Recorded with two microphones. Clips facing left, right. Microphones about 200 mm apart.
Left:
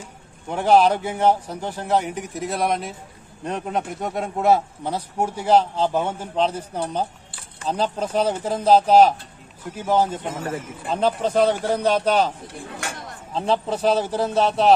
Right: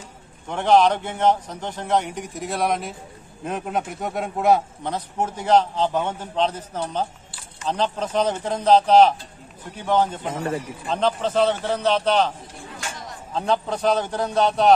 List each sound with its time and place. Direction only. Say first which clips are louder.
0.5 s a man's voice: left 1 dB; 5° left (ahead or behind)
12.5 s a sound: left 3 dB; 60° left (ahead or behind)
13.3 s a man's voice: left 1 dB; centre (ahead or behind)